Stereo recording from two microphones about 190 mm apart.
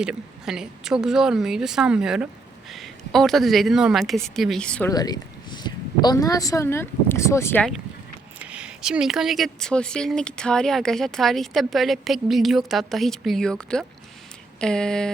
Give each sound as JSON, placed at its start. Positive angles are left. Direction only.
{"t": 0.0, "sound": "speech", "side_deg": -5}
{"t": 4.9, "sound": "speech", "side_deg": 20}
{"t": 8.4, "sound": "speech", "side_deg": -5}